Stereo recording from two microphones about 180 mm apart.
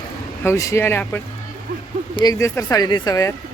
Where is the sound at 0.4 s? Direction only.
15° left (ahead or behind).